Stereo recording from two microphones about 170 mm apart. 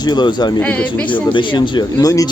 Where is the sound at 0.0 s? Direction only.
25° left (ahead or behind).